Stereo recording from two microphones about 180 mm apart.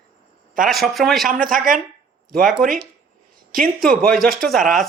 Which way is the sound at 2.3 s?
Centre (ahead or behind).